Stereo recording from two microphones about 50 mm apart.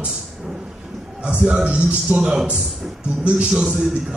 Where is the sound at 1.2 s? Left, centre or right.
Right.